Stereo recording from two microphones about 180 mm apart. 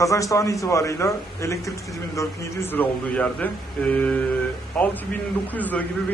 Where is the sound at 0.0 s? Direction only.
20° left (ahead or behind).